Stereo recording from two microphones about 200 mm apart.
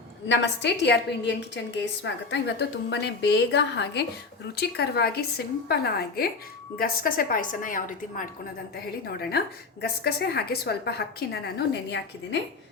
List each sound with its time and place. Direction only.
0.3 s a woman's voice: 60° left (ahead or behind); by 8.2 s 40° left (ahead or behind)
8.7 s a woman's voice: 55° left (ahead or behind)